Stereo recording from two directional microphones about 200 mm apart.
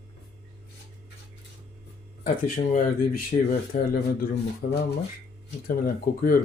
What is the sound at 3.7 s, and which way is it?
Speech, 40° left (ahead or behind).